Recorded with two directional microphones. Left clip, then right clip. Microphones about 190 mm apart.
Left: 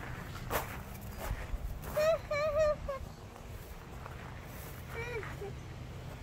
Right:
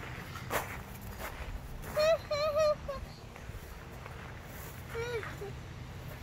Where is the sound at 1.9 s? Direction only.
Centre (ahead or behind).